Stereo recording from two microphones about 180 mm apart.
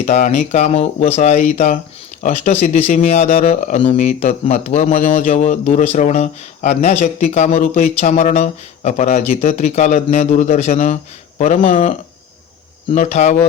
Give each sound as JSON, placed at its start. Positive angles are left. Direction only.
{"t": 0.0, "sound": "speech", "side_deg": 40}